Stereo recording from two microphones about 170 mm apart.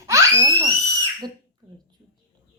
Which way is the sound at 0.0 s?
15° right (ahead or behind).